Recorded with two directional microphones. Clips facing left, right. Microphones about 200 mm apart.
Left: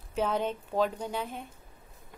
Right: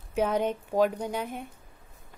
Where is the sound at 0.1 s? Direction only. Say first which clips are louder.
Right 3 dB; 15° right (ahead or behind).